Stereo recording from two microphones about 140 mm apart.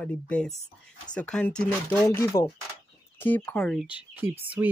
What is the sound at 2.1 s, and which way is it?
Speech, 20° left (ahead or behind).